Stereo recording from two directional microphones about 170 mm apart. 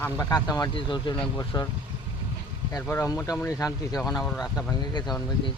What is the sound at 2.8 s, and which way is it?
Speech, 15° left (ahead or behind).